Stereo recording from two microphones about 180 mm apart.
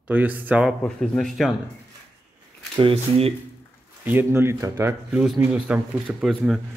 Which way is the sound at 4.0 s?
10° right (ahead or behind).